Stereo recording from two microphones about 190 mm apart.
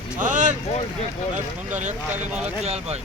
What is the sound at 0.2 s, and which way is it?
Vehicle, 40° right (ahead or behind).